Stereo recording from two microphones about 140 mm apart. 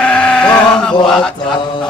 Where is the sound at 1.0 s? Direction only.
5° left (ahead or behind).